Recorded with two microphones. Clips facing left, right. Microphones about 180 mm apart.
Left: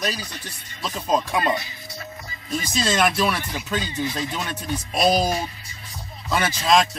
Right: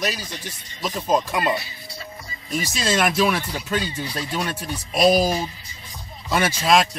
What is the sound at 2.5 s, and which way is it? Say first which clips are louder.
Speech: even; 10° right (ahead or behind).